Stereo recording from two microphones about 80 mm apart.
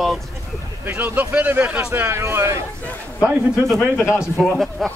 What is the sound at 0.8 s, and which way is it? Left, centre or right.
Speech, right.